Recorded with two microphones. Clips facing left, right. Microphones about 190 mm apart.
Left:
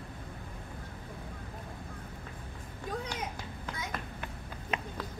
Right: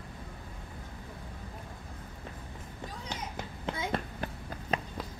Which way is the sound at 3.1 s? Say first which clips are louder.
Left 1 dB; 25° right (ahead or behind).